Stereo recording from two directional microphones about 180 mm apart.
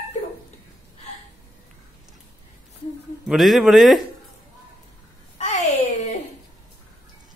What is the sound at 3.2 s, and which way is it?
Speech, centre (ahead or behind).